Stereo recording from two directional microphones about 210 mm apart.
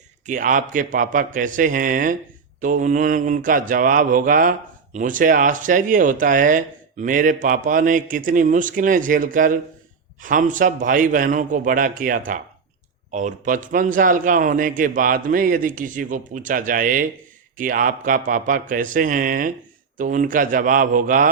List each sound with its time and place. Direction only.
0.3 s a man's voice: 40° right (ahead or behind)